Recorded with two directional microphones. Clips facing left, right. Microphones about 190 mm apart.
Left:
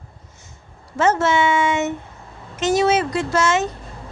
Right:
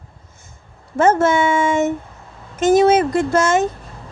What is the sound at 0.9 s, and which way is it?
Speech, 50° right (ahead or behind).